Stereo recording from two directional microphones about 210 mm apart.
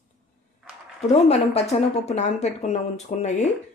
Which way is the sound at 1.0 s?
30° left (ahead or behind).